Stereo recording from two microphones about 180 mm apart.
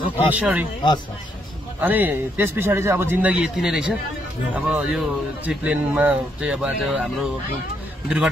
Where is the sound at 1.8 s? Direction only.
10° right (ahead or behind).